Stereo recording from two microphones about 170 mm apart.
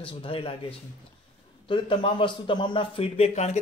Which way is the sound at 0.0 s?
30° left (ahead or behind).